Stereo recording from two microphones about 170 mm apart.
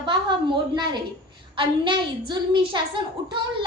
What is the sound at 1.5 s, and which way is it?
A woman's voice, 30° right (ahead or behind).